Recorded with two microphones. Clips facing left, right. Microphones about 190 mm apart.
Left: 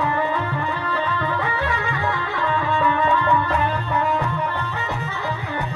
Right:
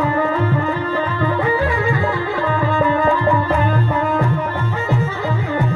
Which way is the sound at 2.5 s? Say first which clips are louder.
Right 3 dB; 40° right (ahead or behind).